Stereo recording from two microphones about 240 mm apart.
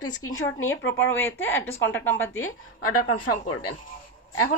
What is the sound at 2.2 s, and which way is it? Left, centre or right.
A woman's voice, left.